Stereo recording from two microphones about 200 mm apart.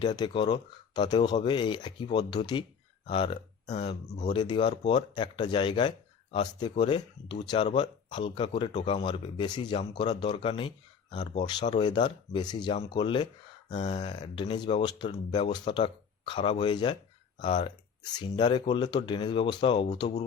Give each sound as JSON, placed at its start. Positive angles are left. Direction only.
{"t": 0.0, "sound": "speech", "side_deg": 20}
{"t": 13.7, "sound": "speech", "side_deg": 35}